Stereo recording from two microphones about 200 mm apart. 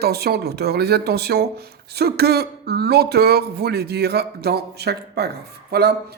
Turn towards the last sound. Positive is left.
turn(degrees=-55)  # may be behind; listen again after turning